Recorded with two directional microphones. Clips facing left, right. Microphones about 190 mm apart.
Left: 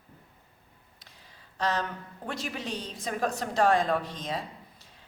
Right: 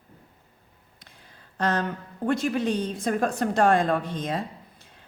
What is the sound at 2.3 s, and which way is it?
A woman's voice, 50° right (ahead or behind).